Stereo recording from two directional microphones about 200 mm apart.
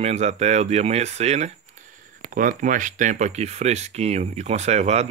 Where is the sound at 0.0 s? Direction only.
35° right (ahead or behind).